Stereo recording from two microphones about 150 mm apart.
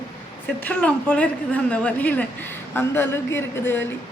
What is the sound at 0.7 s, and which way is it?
Speech, 10° left (ahead or behind).